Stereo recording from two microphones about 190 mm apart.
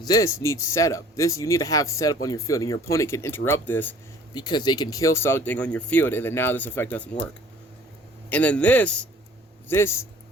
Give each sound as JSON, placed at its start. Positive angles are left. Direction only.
{"t": 0.0, "sound": "speech", "side_deg": 20}
{"t": 4.4, "sound": "speech", "side_deg": 20}
{"t": 8.3, "sound": "speech", "side_deg": 5}